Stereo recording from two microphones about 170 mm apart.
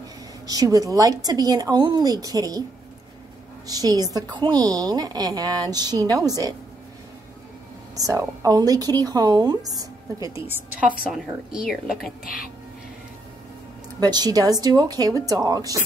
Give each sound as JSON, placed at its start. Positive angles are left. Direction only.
{"t": 0.5, "sound": "a woman's voice", "side_deg": -20}
{"t": 3.6, "sound": "a woman's voice", "side_deg": -20}
{"t": 7.9, "sound": "a woman's voice", "side_deg": -20}
{"t": 10.4, "sound": "a woman's voice", "side_deg": -10}
{"t": 13.9, "sound": "a woman's voice", "side_deg": -25}